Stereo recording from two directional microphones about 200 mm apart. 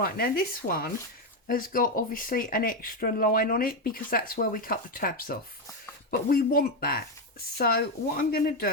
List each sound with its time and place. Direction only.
0.0 s speech: 50° left (ahead or behind)